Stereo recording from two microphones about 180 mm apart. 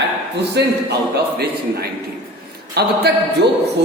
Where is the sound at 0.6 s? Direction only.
70° right (ahead or behind).